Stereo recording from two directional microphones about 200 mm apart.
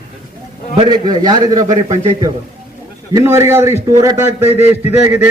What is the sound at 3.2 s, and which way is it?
A man's voice, 15° right (ahead or behind).